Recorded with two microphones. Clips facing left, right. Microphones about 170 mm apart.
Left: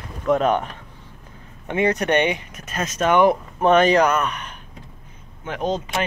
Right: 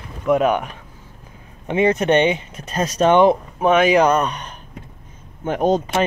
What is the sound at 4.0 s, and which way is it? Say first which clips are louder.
Speech: right 3 dB; 35° right (ahead or behind).